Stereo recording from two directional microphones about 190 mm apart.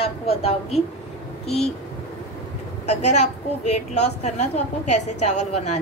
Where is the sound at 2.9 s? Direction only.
35° left (ahead or behind).